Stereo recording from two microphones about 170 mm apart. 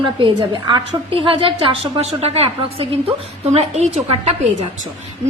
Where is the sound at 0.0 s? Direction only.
30° right (ahead or behind).